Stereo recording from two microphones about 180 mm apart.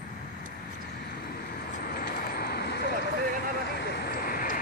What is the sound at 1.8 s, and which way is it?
Vehicle, 55° left (ahead or behind).